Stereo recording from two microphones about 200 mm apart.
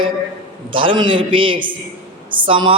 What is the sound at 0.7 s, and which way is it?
A man's voice, 25° right (ahead or behind).